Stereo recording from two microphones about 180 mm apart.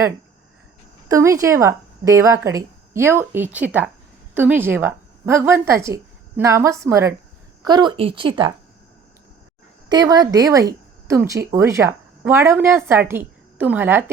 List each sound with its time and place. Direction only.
1.0 s a woman's voice: 15° right (ahead or behind)
9.9 s a woman's voice: 20° right (ahead or behind)